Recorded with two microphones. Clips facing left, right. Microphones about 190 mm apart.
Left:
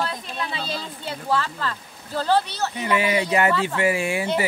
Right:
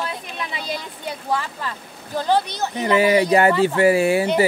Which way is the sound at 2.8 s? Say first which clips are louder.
Right 6 dB; 40° right (ahead or behind).